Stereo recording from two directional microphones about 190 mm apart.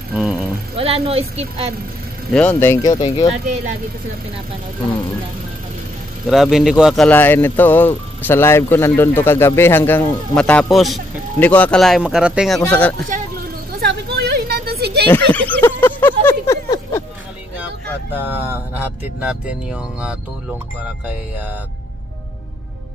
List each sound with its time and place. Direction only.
0.1 s speech: 5° right (ahead or behind)
0.7 s a woman's voice: 30° right (ahead or behind)
2.3 s speech: 10° left (ahead or behind)
6.2 s speech: centre (ahead or behind)
13.7 s a sound: 55° right (ahead or behind)
15.0 s a sound: 10° left (ahead or behind)
18.1 s speech: 10° right (ahead or behind)